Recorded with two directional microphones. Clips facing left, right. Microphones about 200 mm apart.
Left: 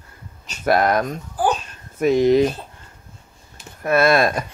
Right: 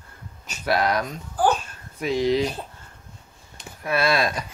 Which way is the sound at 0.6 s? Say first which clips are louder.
Left 5 dB; 50° left (ahead or behind).